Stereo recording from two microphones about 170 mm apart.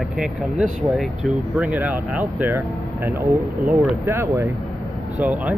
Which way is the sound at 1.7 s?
10° right (ahead or behind).